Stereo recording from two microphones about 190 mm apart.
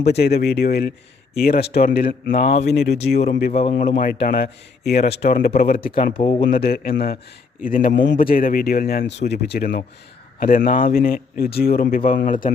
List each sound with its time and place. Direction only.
0.0 s speech: 60° left (ahead or behind)
3.5 s speech: 30° left (ahead or behind)
3.8 s speech: 50° left (ahead or behind)
5.8 s speech: 25° left (ahead or behind)
6.5 s speech: 50° left (ahead or behind)